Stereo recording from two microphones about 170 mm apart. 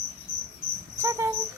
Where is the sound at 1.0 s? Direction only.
15° right (ahead or behind).